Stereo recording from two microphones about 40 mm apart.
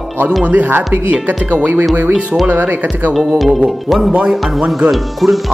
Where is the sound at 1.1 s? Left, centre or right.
Right.